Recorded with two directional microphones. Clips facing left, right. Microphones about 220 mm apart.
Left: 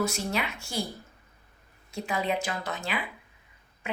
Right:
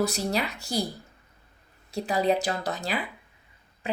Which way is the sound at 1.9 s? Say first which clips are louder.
Right 5 dB; 35° right (ahead or behind).